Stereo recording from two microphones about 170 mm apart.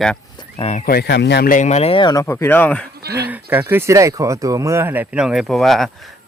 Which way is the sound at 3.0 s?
70° right (ahead or behind).